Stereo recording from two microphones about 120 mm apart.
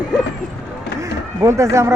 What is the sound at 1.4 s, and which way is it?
Vehicle, 25° right (ahead or behind).